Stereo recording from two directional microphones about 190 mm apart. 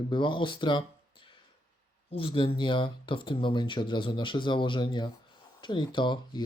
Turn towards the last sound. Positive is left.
turn(degrees=25)  # may be behind; listen again after turning